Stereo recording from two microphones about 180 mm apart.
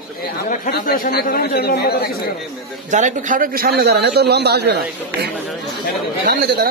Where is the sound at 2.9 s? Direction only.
45° right (ahead or behind).